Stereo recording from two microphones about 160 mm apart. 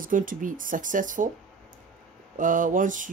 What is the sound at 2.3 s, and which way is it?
Speech, 55° right (ahead or behind).